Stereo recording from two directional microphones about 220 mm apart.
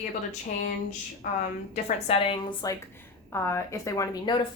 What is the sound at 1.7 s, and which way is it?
Speech, 25° left (ahead or behind).